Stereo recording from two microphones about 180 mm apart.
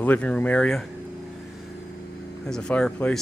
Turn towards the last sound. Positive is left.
turn(degrees=5)  # may be behind; listen again after turning